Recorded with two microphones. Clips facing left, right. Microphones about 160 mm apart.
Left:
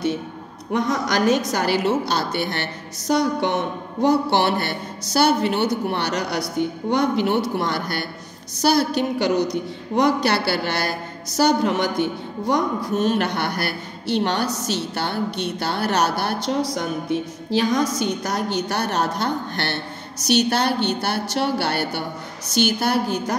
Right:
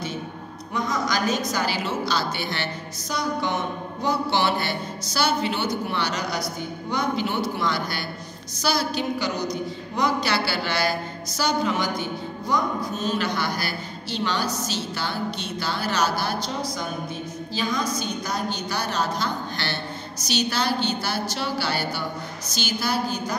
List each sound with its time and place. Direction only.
0.7 s a woman's voice: 70° left (ahead or behind)